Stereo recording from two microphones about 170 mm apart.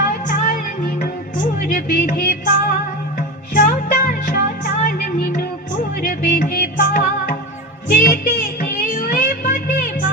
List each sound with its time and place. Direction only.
0.1 s music: 50° left (ahead or behind)